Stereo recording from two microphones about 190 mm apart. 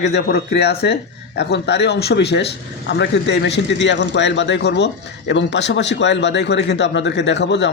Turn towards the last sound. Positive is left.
turn(degrees=65)  # may be behind; listen again after turning